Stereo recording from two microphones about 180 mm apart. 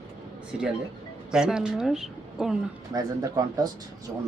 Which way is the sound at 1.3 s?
5° right (ahead or behind).